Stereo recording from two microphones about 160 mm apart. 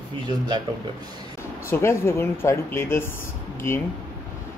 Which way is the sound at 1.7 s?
15° left (ahead or behind).